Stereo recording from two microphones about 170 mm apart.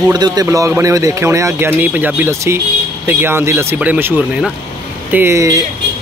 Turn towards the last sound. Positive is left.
turn(degrees=-20)  # may be behind; listen again after turning